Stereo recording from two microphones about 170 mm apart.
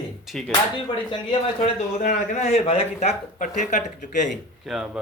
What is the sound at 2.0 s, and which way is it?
Speech, 40° left (ahead or behind).